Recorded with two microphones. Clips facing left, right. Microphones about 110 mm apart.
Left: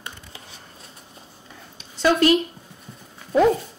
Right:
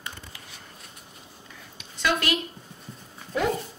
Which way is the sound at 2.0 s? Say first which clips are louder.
Left 9 dB; 30° left (ahead or behind).